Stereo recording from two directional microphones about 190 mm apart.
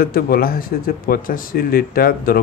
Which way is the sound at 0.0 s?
50° left (ahead or behind).